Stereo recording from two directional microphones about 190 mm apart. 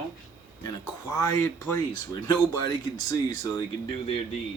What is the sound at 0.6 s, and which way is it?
Speech, 15° left (ahead or behind).